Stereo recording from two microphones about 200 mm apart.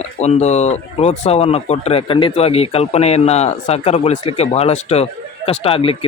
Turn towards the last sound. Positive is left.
turn(degrees=30)  # may be behind; listen again after turning